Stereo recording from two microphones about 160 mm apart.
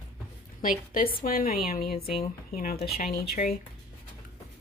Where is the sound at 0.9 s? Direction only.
65° left (ahead or behind).